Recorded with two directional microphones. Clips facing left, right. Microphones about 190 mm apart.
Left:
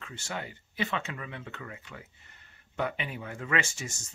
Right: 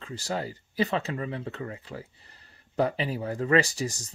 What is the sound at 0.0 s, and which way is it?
Speech, 35° right (ahead or behind).